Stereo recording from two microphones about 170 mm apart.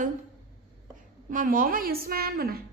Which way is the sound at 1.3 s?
55° right (ahead or behind).